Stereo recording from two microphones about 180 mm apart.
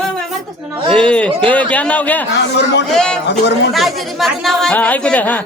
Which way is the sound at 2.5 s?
70° left (ahead or behind).